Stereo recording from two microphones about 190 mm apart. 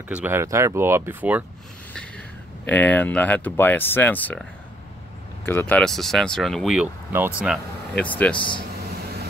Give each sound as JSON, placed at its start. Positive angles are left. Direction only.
{"t": 0.1, "sound": "speech", "side_deg": -10}
{"t": 2.0, "sound": "speech", "side_deg": 5}
{"t": 8.4, "sound": "speech", "side_deg": 25}